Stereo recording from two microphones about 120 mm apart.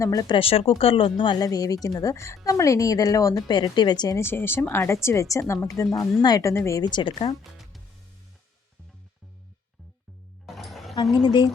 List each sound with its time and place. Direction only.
0.0 s a woman's voice: 30° left (ahead or behind)
0.3 s speech: 50° left (ahead or behind)
1.5 s a woman's voice: 30° left (ahead or behind)
4.2 s a woman's voice: 20° left (ahead or behind); by 7.3 s 40° left (ahead or behind)
10.4 s music: centre (ahead or behind)
11.1 s speech: 40° left (ahead or behind)